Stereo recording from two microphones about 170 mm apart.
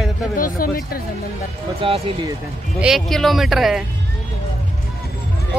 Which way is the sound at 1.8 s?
35° right (ahead or behind).